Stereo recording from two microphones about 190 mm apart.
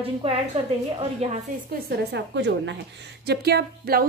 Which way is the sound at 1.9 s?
65° right (ahead or behind).